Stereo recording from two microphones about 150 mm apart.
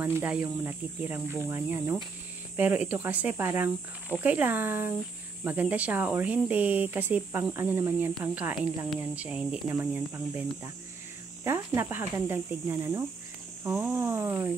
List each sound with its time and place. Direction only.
0.0 s speech: 10° right (ahead or behind)